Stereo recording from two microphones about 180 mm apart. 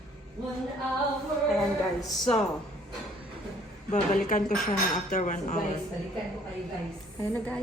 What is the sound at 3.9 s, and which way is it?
Dishes, 40° left (ahead or behind).